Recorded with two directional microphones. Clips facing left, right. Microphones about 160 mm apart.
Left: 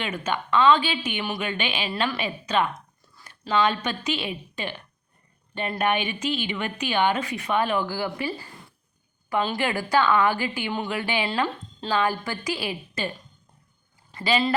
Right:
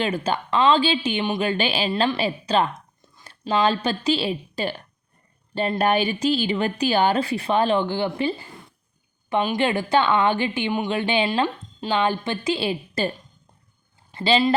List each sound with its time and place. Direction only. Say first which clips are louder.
0.0 s a woman's voice: right 5 dB; 30° right (ahead or behind)
11.3 s a woman's voice: right 3 dB; 15° right (ahead or behind); by 13.1 s 30° right (ahead or behind)
14.1 s a woman's voice: right 4 dB; 30° right (ahead or behind)